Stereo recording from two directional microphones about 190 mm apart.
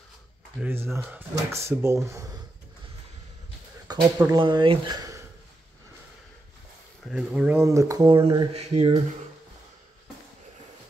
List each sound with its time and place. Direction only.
0.6 s speech: 10° right (ahead or behind)
3.8 s a sound: 20° right (ahead or behind)
4.4 s speech: 25° right (ahead or behind)
7.1 s speech: 5° right (ahead or behind); by 8.9 s 30° right (ahead or behind)